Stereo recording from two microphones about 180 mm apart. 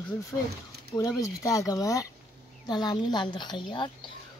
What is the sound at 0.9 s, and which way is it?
Speech, 20° left (ahead or behind).